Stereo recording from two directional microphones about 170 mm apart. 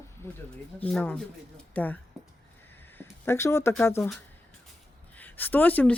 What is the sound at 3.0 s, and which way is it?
Speech, 15° left (ahead or behind).